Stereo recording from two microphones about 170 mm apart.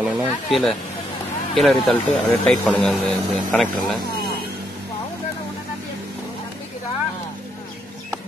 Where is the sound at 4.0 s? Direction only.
65° right (ahead or behind).